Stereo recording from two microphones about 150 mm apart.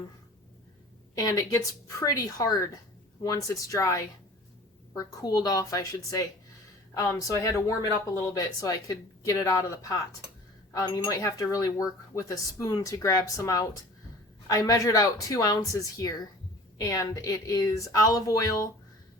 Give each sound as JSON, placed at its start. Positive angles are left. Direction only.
{"t": 1.1, "sound": "speech", "side_deg": 25}